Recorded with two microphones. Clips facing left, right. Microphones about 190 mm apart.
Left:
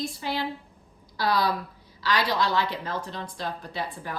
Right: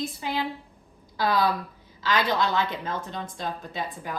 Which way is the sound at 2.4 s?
20° right (ahead or behind).